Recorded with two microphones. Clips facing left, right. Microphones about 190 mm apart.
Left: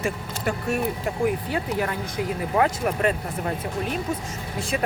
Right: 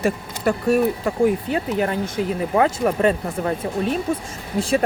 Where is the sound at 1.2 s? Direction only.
25° right (ahead or behind).